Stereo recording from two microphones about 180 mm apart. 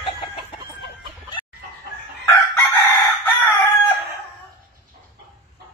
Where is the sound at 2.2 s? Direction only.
15° left (ahead or behind).